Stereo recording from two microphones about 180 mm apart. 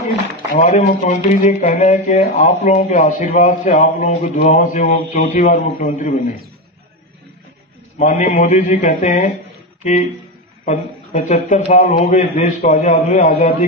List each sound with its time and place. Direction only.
0.5 s speech: 45° left (ahead or behind)
8.0 s speech: 40° left (ahead or behind)
10.6 s speech: 40° left (ahead or behind)